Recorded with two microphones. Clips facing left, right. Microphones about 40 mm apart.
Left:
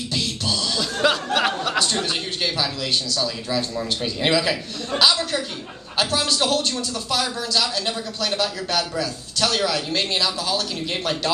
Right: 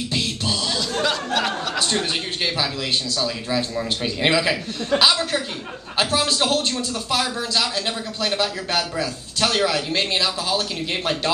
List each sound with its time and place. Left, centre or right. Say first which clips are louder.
0.1 s beatboxing: left 1 dB; right
1.0 s a sound: left 4 dB; centre
1.8 s a man's voice: even; centre